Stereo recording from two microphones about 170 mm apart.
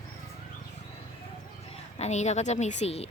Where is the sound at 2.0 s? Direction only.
40° left (ahead or behind).